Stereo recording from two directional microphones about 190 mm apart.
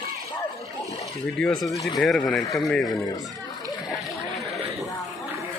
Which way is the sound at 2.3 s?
Centre (ahead or behind).